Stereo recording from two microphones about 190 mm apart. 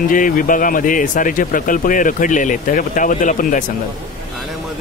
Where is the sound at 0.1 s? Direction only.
45° left (ahead or behind).